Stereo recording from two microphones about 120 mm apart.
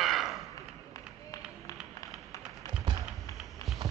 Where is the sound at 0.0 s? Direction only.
Centre (ahead or behind).